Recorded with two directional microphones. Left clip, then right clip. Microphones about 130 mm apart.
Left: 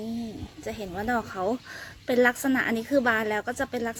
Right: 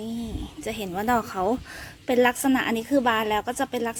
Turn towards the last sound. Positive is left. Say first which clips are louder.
# right 3 dB
turn(degrees=-10)  # may be behind; listen again after turning